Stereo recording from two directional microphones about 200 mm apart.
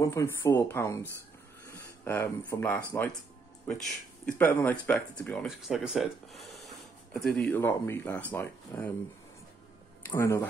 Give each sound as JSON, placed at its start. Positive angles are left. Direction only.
{"t": 0.0, "sound": "speech", "side_deg": 15}
{"t": 3.6, "sound": "speech", "side_deg": 5}
{"t": 10.0, "sound": "speech", "side_deg": 15}